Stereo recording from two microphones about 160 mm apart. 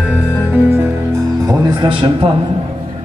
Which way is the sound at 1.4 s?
30° right (ahead or behind).